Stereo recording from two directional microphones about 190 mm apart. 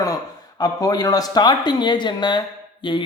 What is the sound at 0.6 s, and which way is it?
Speech, 20° left (ahead or behind).